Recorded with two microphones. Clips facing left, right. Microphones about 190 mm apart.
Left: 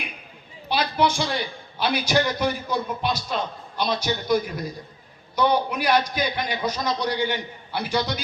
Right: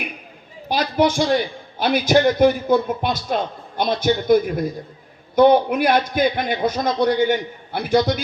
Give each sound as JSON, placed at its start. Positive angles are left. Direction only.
{"t": 0.7, "sound": "a man's voice", "side_deg": -45}